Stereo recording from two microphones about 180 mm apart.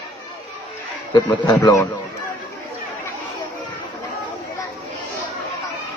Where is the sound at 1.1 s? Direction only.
25° left (ahead or behind).